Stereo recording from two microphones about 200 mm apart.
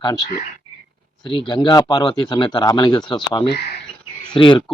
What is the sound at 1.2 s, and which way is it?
Speech, 20° left (ahead or behind).